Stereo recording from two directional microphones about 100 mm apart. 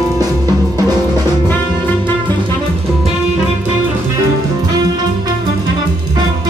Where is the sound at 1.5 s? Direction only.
20° left (ahead or behind).